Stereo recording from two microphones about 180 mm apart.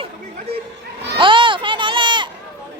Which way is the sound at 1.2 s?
30° right (ahead or behind).